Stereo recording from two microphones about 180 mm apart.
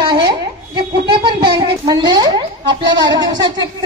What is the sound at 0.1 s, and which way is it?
A child's voice, 25° right (ahead or behind).